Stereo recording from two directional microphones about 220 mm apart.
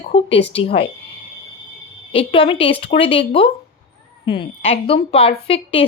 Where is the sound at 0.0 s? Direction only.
25° left (ahead or behind).